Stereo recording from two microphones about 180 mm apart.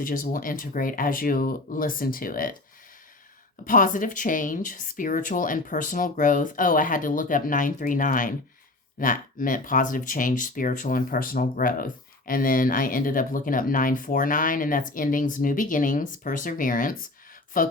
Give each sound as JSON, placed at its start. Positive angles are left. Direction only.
{"t": 0.0, "sound": "speech", "side_deg": 50}
{"t": 3.7, "sound": "speech", "side_deg": 45}